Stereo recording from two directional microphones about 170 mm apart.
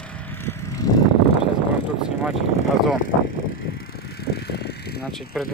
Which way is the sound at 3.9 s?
65° left (ahead or behind).